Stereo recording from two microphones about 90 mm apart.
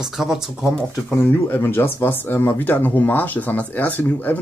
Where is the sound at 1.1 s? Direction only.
25° left (ahead or behind).